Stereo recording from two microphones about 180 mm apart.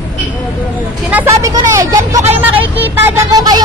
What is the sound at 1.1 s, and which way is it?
Speech, 15° right (ahead or behind).